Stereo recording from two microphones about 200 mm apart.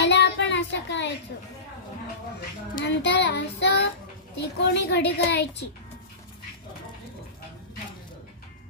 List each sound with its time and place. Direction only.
0.0 s child singing: 60° left (ahead or behind)
1.3 s a child's voice: 60° left (ahead or behind)
2.8 s a child's voice: 60° left (ahead or behind)